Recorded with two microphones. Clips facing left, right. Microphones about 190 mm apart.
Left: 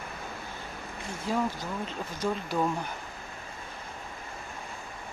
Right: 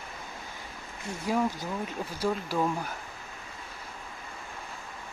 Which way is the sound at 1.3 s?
10° right (ahead or behind).